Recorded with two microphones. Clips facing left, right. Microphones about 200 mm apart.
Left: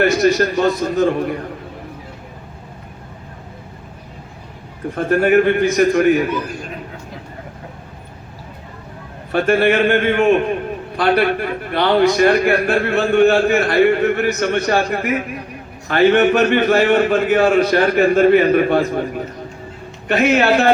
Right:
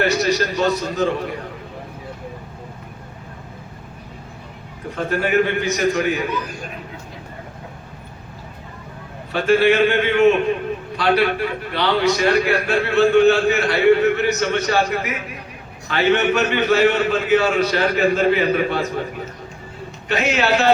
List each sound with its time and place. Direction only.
0.0 s a man's voice: 50° left (ahead or behind)
4.9 s a man's voice: 50° left (ahead or behind)
9.3 s a man's voice: 50° left (ahead or behind)
20.1 s a man's voice: 55° left (ahead or behind)